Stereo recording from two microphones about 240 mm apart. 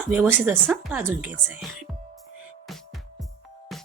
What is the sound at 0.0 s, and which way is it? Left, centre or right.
A woman's voice, centre.